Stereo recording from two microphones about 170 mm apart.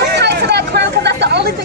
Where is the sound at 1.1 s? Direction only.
80° right.